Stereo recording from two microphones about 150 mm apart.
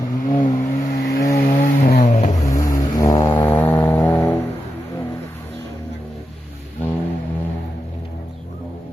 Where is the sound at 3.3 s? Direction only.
15° left (ahead or behind).